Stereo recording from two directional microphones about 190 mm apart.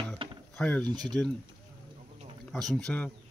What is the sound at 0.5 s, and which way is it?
Speech, 5° left (ahead or behind).